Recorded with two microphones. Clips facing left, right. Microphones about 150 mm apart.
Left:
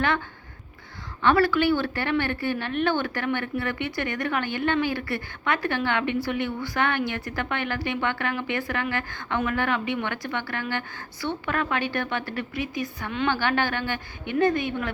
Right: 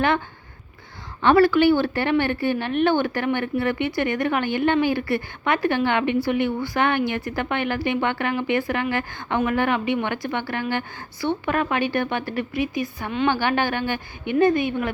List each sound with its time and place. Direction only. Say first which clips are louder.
1.2 s a woman's voice: right 5 dB; 20° right (ahead or behind)